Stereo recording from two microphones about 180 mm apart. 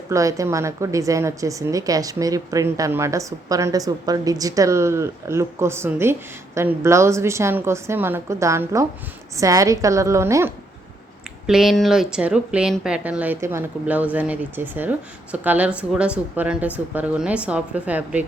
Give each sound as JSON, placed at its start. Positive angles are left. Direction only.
{"t": 0.1, "sound": "speech", "side_deg": -20}
{"t": 11.4, "sound": "speech", "side_deg": 0}